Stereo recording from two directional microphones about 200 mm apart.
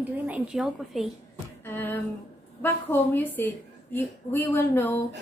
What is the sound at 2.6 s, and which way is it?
A woman's voice, 10° left (ahead or behind).